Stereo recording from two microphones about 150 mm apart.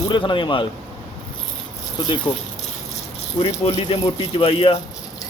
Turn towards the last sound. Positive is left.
turn(degrees=40)  # may be behind; listen again after turning